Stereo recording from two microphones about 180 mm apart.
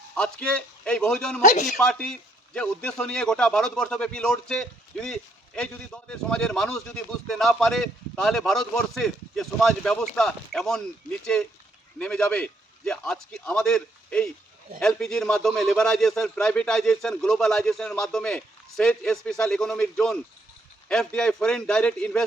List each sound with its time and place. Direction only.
0.2 s a man's voice: 5° left (ahead or behind)
1.4 s speech: 40° left (ahead or behind)
1.6 s a man's voice: centre (ahead or behind)